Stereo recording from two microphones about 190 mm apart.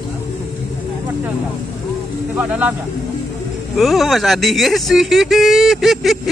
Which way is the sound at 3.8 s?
Centre (ahead or behind).